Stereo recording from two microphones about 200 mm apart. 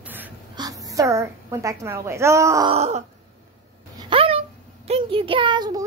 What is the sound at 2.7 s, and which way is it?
Wail, 30° right (ahead or behind).